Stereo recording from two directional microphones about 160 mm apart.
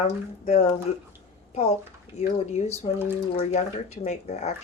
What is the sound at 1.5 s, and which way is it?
A child's voice, 45° left (ahead or behind).